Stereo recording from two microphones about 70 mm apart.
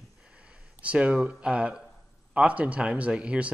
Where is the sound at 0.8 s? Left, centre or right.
Centre.